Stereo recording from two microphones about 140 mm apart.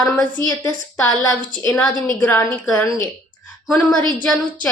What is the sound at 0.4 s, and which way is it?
A woman's voice, 20° left (ahead or behind).